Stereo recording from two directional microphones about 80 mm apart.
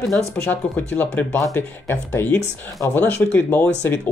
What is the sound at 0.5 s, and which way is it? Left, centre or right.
Speech, left.